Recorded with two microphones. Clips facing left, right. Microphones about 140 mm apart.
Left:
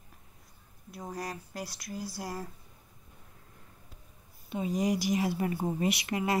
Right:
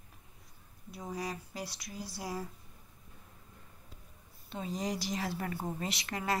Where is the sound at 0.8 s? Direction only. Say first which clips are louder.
Left 1 dB; centre (ahead or behind).